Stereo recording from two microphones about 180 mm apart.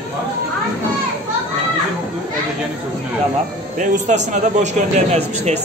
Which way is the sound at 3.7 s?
45° right (ahead or behind).